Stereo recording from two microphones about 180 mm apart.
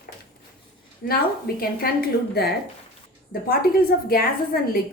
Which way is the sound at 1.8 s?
55° left (ahead or behind).